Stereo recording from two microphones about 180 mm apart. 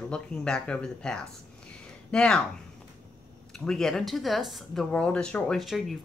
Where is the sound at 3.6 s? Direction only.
5° left (ahead or behind).